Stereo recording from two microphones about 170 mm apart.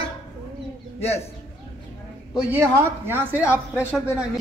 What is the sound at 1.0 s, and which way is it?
Speech, 40° left (ahead or behind).